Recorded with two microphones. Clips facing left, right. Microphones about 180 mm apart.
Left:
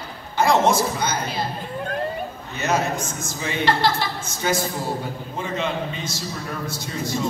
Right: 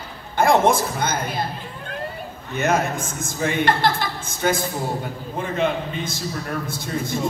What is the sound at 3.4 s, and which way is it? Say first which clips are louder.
A man's voice: right 1 dB; 55° right (ahead or behind).